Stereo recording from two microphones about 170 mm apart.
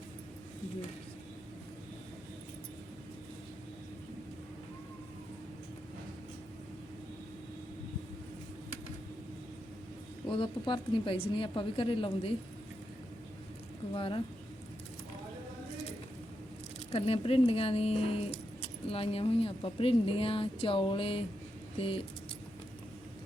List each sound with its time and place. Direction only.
10.2 s speech: 30° left (ahead or behind)
13.9 s speech: 30° left (ahead or behind)
16.9 s speech: 35° left (ahead or behind)